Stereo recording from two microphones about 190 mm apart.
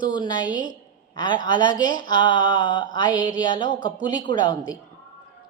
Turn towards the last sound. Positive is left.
turn(degrees=20)  # may be behind; listen again after turning